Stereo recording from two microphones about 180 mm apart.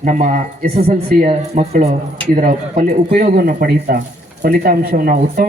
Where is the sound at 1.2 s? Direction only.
35° right (ahead or behind).